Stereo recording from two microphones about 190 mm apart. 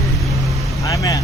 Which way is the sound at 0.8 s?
20° left (ahead or behind).